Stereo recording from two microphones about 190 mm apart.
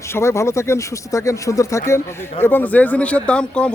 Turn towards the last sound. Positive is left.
turn(degrees=5)  # may be behind; listen again after turning